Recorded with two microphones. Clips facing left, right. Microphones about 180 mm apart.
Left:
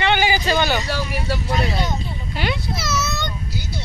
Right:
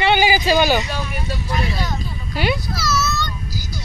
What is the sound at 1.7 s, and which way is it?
Vehicle, 20° left (ahead or behind).